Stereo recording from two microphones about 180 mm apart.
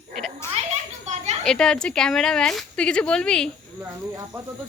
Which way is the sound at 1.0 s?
40° right (ahead or behind).